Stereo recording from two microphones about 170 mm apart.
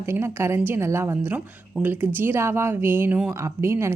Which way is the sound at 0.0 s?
15° right (ahead or behind).